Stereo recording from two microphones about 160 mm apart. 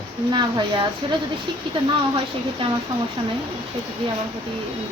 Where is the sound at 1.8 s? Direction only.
30° right (ahead or behind).